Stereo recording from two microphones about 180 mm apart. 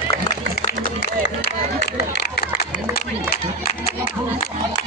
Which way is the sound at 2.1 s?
65° left (ahead or behind).